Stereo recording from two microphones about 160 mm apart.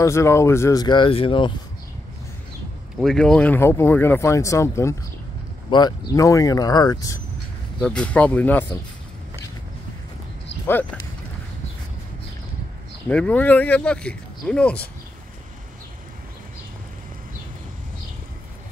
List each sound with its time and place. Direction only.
0.0 s speech: 20° left (ahead or behind)
3.0 s speech: 5° left (ahead or behind); by 7.2 s 25° left (ahead or behind)
7.8 s speech: 5° left (ahead or behind)
13.1 s speech: 10° left (ahead or behind)